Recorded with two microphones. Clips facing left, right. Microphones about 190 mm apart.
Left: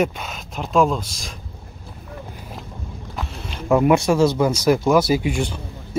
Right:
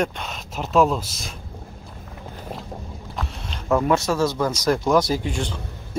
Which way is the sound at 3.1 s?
Centre (ahead or behind).